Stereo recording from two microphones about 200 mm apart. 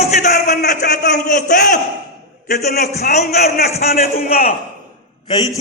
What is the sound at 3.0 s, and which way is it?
Music, 35° left (ahead or behind).